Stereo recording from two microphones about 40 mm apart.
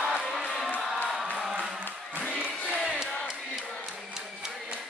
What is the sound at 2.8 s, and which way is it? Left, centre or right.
Crowd, centre.